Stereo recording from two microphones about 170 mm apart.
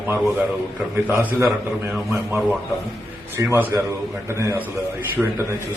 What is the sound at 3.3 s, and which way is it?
A man's voice, 15° right (ahead or behind).